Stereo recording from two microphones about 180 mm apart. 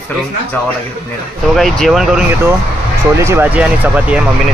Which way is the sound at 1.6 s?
Centre (ahead or behind).